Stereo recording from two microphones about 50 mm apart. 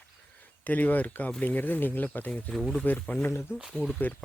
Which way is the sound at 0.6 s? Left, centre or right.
Left.